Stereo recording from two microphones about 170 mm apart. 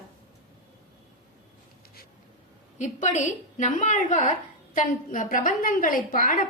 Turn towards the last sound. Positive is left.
turn(degrees=55)  # may be behind; listen again after turning